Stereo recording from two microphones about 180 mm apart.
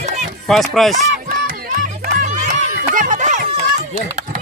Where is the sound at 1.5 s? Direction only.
50° right (ahead or behind).